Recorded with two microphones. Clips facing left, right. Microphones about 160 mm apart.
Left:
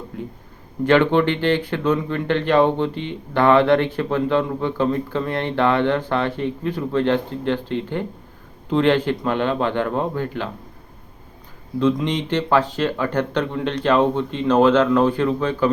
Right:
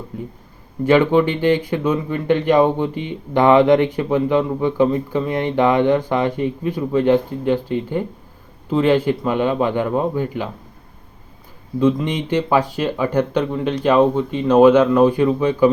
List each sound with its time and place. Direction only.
0.9 s speech: 10° right (ahead or behind)
11.8 s speech: 10° right (ahead or behind)